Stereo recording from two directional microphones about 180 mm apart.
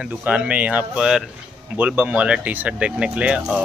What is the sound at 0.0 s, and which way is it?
Speech, 5° right (ahead or behind).